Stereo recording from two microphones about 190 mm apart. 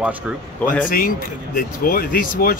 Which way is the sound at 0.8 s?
45° left (ahead or behind).